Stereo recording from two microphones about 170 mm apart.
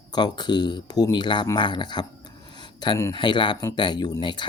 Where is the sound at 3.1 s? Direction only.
30° left (ahead or behind).